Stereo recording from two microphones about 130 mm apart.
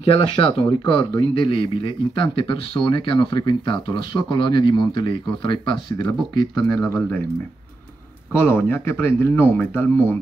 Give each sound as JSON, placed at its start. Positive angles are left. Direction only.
{"t": 0.0, "sound": "speech", "side_deg": 40}
{"t": 8.4, "sound": "speech", "side_deg": 15}